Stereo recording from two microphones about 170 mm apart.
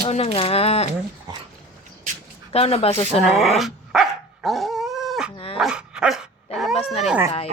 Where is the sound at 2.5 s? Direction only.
35° left (ahead or behind).